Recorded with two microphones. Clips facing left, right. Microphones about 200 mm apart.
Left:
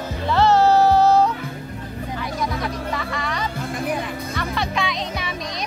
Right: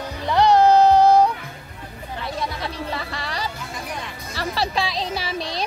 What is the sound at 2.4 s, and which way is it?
Music, 30° right (ahead or behind).